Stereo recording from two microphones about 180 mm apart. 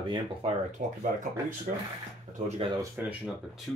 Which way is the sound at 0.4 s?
30° right (ahead or behind).